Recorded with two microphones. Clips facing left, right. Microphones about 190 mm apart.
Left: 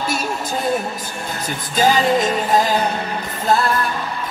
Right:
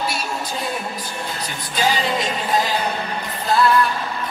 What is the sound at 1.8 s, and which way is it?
Music, 45° left (ahead or behind).